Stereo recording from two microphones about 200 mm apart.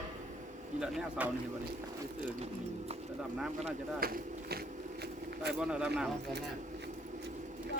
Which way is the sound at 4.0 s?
50° right (ahead or behind).